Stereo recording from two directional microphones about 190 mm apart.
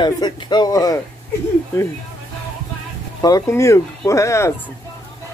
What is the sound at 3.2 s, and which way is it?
Speech, 15° left (ahead or behind).